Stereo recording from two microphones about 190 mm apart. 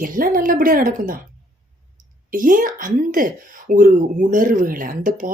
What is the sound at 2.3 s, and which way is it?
Speech, 45° right (ahead or behind).